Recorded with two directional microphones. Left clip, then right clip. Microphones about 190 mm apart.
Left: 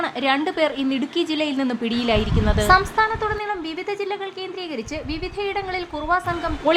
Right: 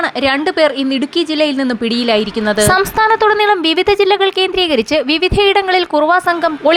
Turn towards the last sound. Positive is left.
turn(degrees=-35)  # may be behind; listen again after turning